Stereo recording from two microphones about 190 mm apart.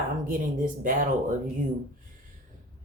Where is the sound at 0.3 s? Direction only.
45° right (ahead or behind).